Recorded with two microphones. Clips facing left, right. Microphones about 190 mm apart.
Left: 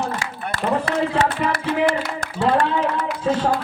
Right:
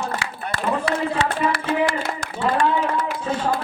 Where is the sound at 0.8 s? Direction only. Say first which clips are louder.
Left 2 dB; 50° left (ahead or behind).